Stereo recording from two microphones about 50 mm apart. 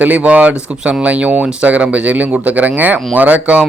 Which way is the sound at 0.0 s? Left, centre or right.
Right.